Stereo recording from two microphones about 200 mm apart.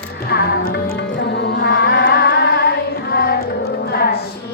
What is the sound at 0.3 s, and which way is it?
Music, 50° left (ahead or behind).